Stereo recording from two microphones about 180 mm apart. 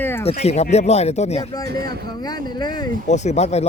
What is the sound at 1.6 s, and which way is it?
Speech, 60° right (ahead or behind).